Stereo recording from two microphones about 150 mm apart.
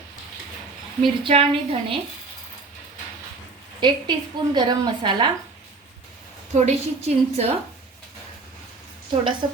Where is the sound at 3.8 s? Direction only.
30° right (ahead or behind).